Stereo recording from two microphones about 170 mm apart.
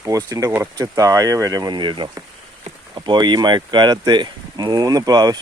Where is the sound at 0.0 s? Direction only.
20° right (ahead or behind).